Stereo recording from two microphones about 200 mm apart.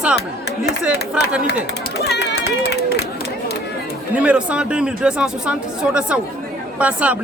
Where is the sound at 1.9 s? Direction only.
55° left (ahead or behind).